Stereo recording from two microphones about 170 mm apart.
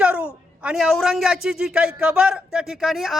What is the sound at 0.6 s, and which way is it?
A man's voice, centre (ahead or behind).